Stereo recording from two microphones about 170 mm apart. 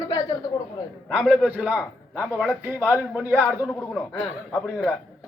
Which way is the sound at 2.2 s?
5° left (ahead or behind).